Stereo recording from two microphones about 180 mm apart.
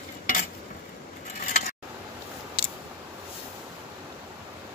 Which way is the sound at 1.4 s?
45° left (ahead or behind).